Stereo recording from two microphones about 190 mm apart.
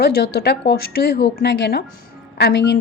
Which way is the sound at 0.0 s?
60° left (ahead or behind).